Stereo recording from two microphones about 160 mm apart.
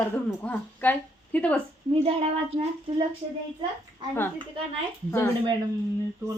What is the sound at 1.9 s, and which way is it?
A child's voice, 35° right (ahead or behind).